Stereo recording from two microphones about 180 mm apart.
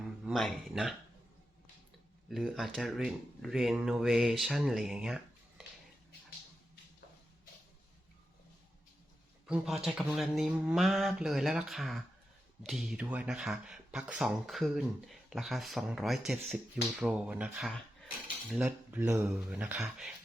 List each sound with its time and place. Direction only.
0.3 s speech: centre (ahead or behind)
2.3 s speech: centre (ahead or behind)
9.5 s speech: centre (ahead or behind); by 19.3 s 15° right (ahead or behind)
19.3 s speech: 5° right (ahead or behind)